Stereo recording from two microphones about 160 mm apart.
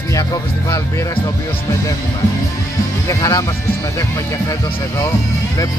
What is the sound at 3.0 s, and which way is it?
Music, 20° left (ahead or behind).